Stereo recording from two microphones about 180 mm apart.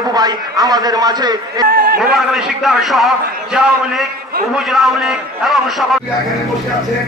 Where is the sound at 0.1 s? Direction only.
20° right (ahead or behind).